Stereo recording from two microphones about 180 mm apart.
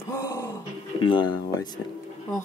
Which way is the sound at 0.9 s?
25° left (ahead or behind).